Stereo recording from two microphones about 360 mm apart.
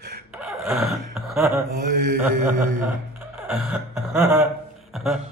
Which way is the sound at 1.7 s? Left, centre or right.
Right.